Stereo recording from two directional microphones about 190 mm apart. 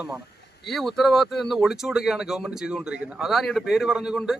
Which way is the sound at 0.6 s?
Centre (ahead or behind).